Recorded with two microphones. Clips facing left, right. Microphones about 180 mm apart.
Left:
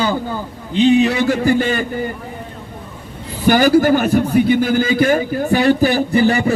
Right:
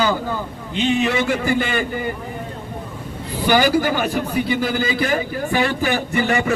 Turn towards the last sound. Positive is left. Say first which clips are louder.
# left 5 dB
turn(degrees=35)  # may be behind; listen again after turning